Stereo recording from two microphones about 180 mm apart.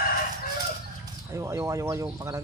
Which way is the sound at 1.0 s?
15° right (ahead or behind).